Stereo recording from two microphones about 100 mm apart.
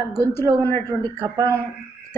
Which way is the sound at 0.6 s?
25° left (ahead or behind).